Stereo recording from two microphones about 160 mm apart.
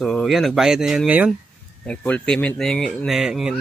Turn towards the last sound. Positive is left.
turn(degrees=-5)  # may be behind; listen again after turning